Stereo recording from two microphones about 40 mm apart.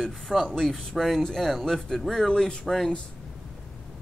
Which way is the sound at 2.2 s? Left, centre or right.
Centre.